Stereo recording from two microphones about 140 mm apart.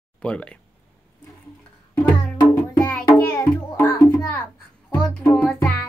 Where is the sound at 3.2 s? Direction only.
15° left (ahead or behind).